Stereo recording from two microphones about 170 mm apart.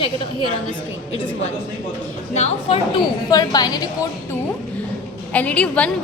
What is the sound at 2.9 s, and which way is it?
Speech, 25° left (ahead or behind).